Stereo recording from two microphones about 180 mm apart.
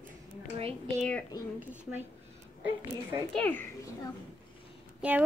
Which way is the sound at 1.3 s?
15° left (ahead or behind).